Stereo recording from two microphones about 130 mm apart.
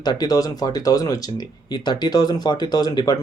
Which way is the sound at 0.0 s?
30° left (ahead or behind).